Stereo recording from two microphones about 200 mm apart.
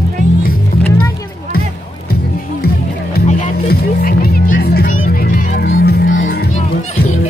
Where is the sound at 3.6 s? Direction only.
50° left (ahead or behind).